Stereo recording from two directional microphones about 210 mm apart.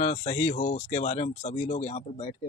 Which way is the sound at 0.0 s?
30° left (ahead or behind).